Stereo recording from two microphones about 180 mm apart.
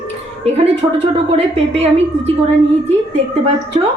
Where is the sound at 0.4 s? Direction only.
35° right (ahead or behind).